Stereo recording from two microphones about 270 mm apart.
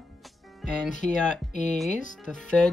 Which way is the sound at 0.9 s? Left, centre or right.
Left.